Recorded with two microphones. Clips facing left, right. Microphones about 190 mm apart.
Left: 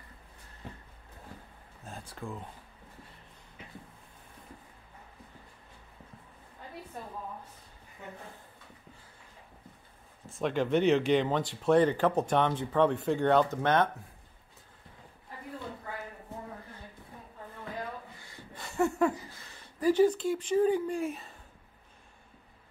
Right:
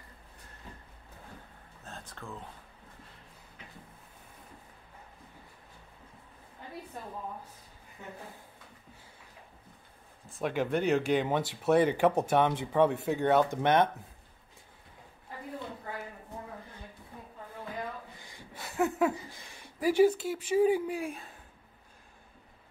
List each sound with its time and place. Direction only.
1.9 s speech: 10° left (ahead or behind)
10.2 s speech: 5° right (ahead or behind)
18.2 s a sound: 15° right (ahead or behind)
18.6 s laughter: centre (ahead or behind)
19.3 s speech: 15° right (ahead or behind)